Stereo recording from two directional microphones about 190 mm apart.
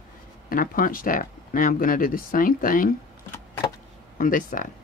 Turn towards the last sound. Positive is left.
turn(degrees=45)  # may be behind; listen again after turning